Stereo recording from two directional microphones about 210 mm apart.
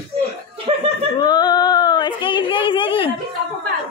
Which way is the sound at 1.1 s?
20° left (ahead or behind).